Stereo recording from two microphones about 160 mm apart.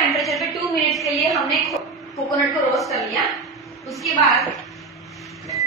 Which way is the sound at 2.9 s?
Centre (ahead or behind).